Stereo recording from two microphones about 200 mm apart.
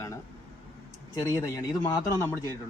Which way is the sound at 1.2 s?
15° left (ahead or behind).